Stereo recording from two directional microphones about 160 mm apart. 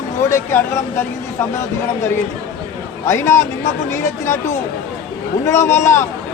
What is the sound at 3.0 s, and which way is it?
Speech, 15° left (ahead or behind).